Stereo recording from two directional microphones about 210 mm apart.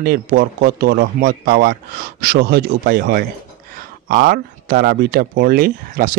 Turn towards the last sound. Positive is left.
turn(degrees=-45)  # may be behind; listen again after turning